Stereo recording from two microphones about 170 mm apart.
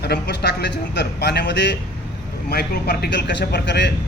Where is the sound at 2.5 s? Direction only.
65° left (ahead or behind); by 3.9 s 90° left.